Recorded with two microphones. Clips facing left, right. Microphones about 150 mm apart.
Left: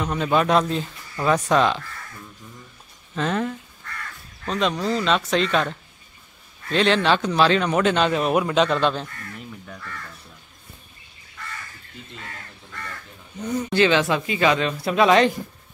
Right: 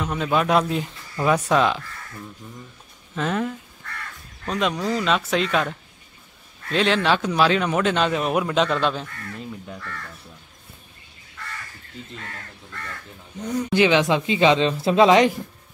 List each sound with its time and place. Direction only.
0.0 s speech: centre (ahead or behind)
3.2 s speech: 5° right (ahead or behind)
13.4 s speech: centre (ahead or behind)
13.7 s speech: 15° right (ahead or behind)